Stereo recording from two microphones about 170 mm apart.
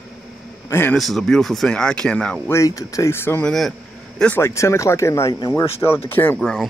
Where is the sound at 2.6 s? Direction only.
20° left (ahead or behind).